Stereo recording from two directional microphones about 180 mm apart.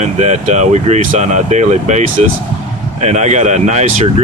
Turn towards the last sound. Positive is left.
turn(degrees=-40)  # may be behind; listen again after turning